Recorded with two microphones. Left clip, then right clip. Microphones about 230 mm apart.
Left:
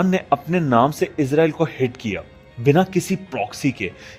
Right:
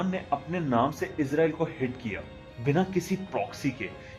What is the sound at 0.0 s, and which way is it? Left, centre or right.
Speech, left.